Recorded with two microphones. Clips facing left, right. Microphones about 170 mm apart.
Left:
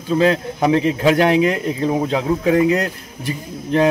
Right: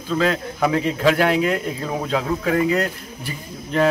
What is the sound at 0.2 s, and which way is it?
Speech, 25° left (ahead or behind).